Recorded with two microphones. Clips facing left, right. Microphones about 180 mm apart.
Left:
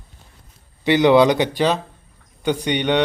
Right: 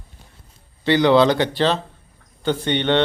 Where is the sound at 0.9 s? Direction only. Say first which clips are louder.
Left 1 dB; 20° left (ahead or behind).